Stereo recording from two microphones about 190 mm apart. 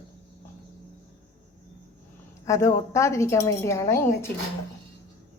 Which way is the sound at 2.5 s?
15° left (ahead or behind).